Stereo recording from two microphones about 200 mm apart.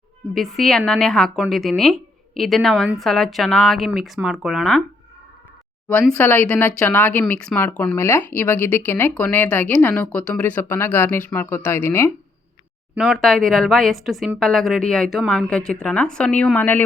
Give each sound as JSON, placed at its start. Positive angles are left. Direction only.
{"t": 0.3, "sound": "a woman's voice", "side_deg": 0}
{"t": 5.9, "sound": "speech", "side_deg": 5}
{"t": 13.0, "sound": "a woman's voice", "side_deg": 0}